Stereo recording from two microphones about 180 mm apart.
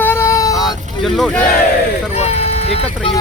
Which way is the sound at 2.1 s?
35° left (ahead or behind).